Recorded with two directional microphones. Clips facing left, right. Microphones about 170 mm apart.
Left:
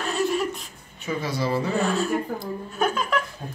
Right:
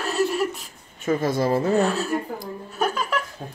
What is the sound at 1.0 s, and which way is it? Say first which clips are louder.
Speech: right 5 dB; 50° right (ahead or behind).